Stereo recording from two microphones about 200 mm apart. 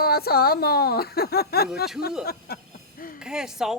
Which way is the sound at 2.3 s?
50° left (ahead or behind).